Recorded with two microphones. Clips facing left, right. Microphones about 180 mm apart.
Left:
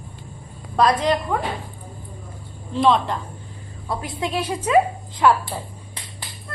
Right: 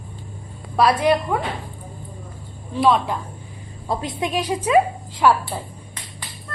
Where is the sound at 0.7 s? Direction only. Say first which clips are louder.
Right 1 dB; 10° right (ahead or behind).